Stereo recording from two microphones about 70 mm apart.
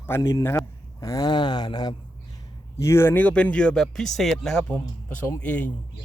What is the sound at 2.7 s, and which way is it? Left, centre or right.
Speech, left.